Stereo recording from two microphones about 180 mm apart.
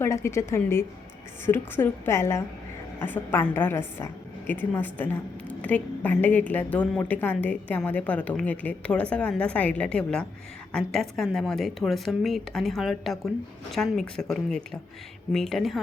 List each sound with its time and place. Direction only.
0.0 s a woman's voice: 15° left (ahead or behind)